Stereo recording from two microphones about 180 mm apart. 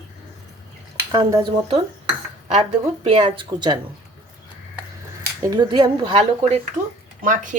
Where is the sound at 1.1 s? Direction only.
25° right (ahead or behind).